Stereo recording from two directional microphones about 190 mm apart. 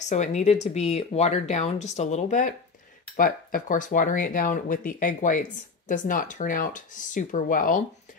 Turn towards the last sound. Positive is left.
turn(degrees=45)  # may be behind; listen again after turning